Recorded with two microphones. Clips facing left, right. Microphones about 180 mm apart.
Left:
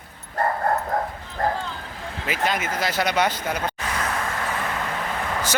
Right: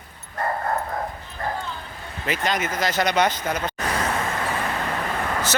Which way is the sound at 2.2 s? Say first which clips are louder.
Right 1 dB; 5° left (ahead or behind).